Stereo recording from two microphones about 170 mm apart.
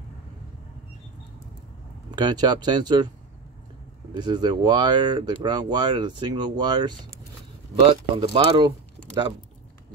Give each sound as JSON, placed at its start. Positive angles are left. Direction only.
{"t": 2.0, "sound": "speech", "side_deg": -25}
{"t": 4.2, "sound": "speech", "side_deg": -25}